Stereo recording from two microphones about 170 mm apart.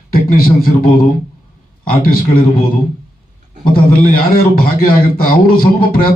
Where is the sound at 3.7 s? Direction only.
60° left (ahead or behind).